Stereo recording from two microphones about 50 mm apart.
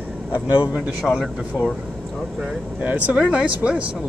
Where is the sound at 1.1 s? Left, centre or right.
Left.